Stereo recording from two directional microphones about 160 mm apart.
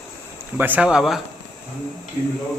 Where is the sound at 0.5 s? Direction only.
10° right (ahead or behind).